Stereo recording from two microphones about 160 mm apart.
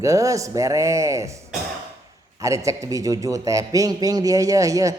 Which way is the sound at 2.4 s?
20° right (ahead or behind).